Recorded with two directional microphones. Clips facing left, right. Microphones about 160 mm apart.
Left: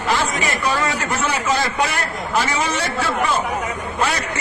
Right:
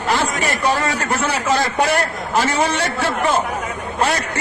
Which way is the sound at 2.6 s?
50° right (ahead or behind).